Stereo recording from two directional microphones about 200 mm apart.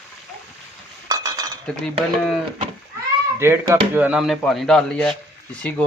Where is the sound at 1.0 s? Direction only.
20° right (ahead or behind).